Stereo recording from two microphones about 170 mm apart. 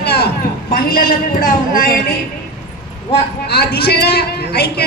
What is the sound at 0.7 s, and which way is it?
A woman's voice, 55° left (ahead or behind).